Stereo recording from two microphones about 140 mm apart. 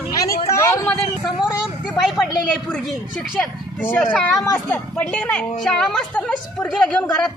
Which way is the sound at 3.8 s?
15° left (ahead or behind).